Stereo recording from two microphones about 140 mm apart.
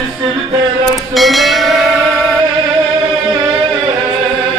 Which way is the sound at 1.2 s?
Centre (ahead or behind).